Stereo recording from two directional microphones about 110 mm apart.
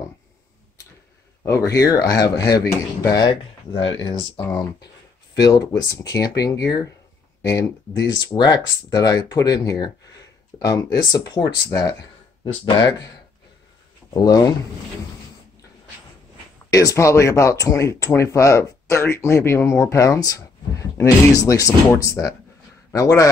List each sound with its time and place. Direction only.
1.7 s speech: 30° left (ahead or behind); by 4.3 s 45° left (ahead or behind)
5.3 s speech: 35° left (ahead or behind)
14.1 s speech: 35° left (ahead or behind)
16.7 s a man's voice: 30° left (ahead or behind)